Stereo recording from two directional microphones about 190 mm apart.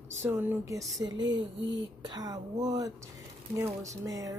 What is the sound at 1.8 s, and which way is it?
Speech, 20° right (ahead or behind).